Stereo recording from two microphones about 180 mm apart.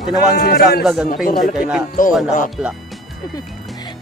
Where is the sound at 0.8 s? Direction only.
Centre (ahead or behind).